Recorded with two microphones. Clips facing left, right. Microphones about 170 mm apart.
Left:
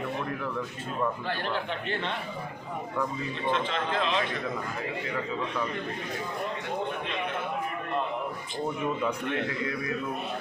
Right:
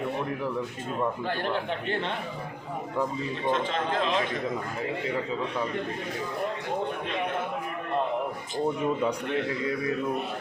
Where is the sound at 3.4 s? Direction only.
45° right (ahead or behind).